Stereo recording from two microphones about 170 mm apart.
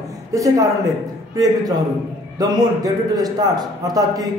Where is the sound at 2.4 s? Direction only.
20° right (ahead or behind).